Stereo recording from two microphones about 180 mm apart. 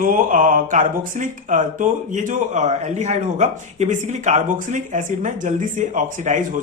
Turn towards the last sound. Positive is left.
turn(degrees=-45)  # may be behind; listen again after turning